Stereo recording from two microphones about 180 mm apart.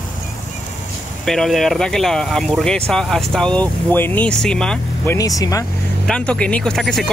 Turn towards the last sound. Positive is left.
turn(degrees=0)  # may be behind; listen again after turning